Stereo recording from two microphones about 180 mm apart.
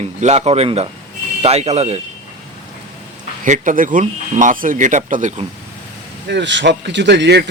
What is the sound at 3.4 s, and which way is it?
Speech, 45° right (ahead or behind).